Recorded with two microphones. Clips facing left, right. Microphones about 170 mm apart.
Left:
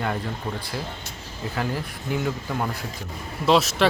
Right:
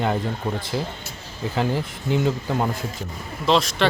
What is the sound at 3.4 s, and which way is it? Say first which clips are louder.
Speech: left 1 dB; 5° left (ahead or behind).